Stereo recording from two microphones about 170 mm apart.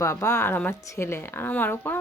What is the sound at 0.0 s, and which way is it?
Speech, 15° left (ahead or behind).